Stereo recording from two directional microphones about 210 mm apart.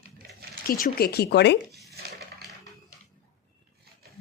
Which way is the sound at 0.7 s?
45° left (ahead or behind).